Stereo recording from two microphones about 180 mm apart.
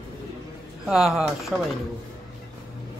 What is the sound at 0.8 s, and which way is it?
Speech, centre (ahead or behind).